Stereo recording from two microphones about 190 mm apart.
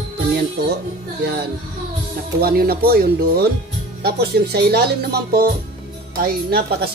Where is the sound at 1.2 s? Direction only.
55° right (ahead or behind).